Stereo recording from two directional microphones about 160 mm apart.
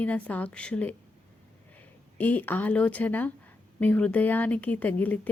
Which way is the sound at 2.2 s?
10° left (ahead or behind).